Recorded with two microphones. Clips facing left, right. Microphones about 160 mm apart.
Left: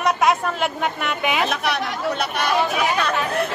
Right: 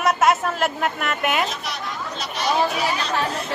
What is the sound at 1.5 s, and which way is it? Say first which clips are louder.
Speech: left 6 dB; 65° left (ahead or behind).